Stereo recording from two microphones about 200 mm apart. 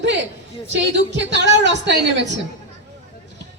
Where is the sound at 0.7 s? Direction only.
65° right (ahead or behind).